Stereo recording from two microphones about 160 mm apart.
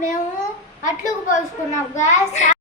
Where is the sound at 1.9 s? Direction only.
50° left (ahead or behind).